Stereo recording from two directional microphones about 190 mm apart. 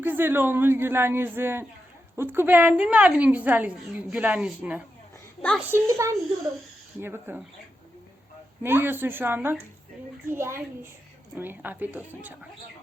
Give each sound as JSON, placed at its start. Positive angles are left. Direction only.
{"t": 0.0, "sound": "a woman's voice", "side_deg": -10}
{"t": 5.7, "sound": "a woman's voice", "side_deg": -15}
{"t": 8.6, "sound": "a woman's voice", "side_deg": -10}